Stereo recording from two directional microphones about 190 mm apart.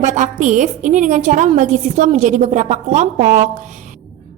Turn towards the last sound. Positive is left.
turn(degrees=-40)  # may be behind; listen again after turning